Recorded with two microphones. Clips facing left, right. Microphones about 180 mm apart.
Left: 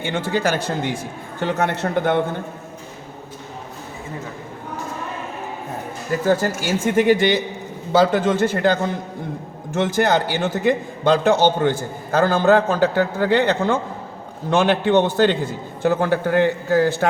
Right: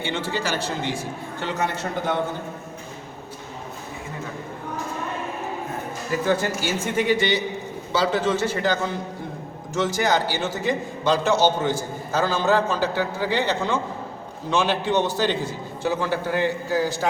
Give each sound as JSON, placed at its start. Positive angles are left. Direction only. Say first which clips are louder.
{"t": 0.0, "sound": "a man's voice", "louder": "left 5 dB", "side_deg": 50}
{"t": 6.4, "sound": "a man's voice", "louder": "left 4 dB", "side_deg": 50}